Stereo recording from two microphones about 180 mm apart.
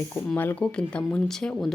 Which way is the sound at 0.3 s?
10° left (ahead or behind).